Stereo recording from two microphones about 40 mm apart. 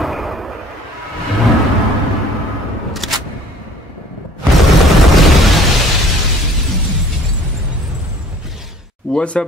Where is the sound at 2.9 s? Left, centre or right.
Centre.